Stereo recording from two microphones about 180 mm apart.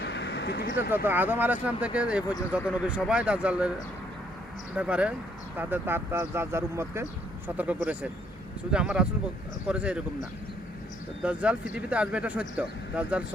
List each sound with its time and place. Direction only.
0.0 s vehicle: 75° left (ahead or behind)
0.8 s speech: 10° right (ahead or behind)
4.7 s speech: 5° right (ahead or behind)
11.2 s speech: 5° right (ahead or behind)